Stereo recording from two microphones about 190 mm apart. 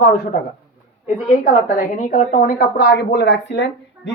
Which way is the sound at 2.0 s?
45° left (ahead or behind).